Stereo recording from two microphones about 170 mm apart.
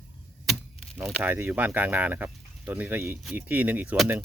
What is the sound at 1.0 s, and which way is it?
Speech, 10° right (ahead or behind).